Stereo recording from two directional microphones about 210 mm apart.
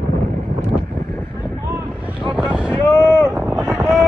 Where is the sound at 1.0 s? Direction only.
15° left (ahead or behind).